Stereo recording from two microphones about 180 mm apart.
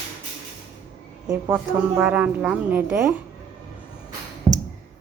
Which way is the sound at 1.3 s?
10° right (ahead or behind).